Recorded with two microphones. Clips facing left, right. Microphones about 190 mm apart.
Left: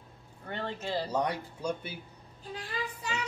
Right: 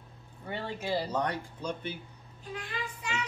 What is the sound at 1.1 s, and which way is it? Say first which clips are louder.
Speech: left 1 dB; 10° left (ahead or behind).